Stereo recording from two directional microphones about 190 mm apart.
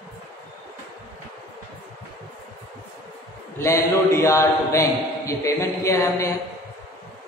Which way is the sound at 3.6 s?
15° left (ahead or behind).